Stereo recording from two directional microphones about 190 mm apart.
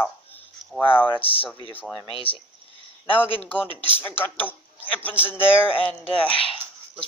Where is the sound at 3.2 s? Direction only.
10° left (ahead or behind).